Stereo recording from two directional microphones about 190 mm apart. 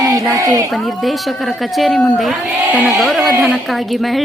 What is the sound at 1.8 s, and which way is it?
A woman's voice, centre (ahead or behind).